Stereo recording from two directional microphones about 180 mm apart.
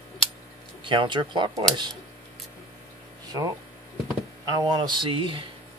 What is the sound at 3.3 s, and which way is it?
Speech, 20° right (ahead or behind).